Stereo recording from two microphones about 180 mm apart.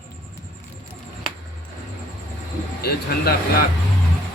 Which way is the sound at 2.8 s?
60° left (ahead or behind).